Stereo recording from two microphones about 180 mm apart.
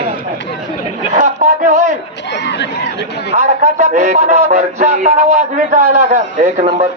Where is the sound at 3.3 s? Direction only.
40° right (ahead or behind).